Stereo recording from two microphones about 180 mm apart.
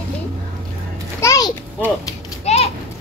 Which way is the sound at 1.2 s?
15° left (ahead or behind).